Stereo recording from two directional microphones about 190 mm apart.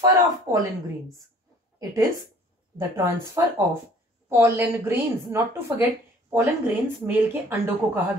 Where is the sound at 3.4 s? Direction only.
15° right (ahead or behind).